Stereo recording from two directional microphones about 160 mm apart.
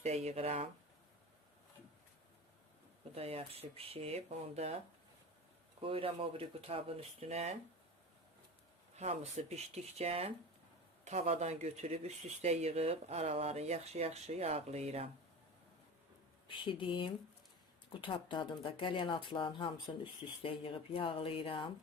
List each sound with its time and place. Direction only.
0.0 s speech: 40° right (ahead or behind)
3.2 s speech: 40° right (ahead or behind)
5.8 s speech: 35° right (ahead or behind)
9.0 s speech: 45° right (ahead or behind)
16.5 s speech: 30° left (ahead or behind)